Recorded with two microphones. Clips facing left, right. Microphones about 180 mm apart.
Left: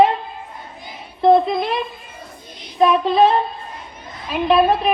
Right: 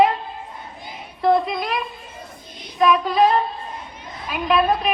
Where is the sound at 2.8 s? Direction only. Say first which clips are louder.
Left 3 dB; 30° left (ahead or behind).